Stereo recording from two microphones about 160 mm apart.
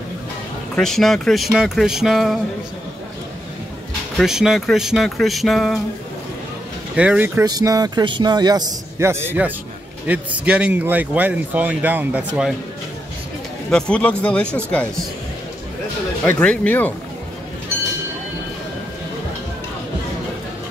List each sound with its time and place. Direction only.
0.7 s speech: centre (ahead or behind)
4.2 s speech: 5° right (ahead or behind)
7.0 s speech: 10° right (ahead or behind)
7.4 s a man's voice: 25° right (ahead or behind); by 12.5 s 5° right (ahead or behind)
13.7 s speech: 5° left (ahead or behind)
16.3 s speech: 10° left (ahead or behind)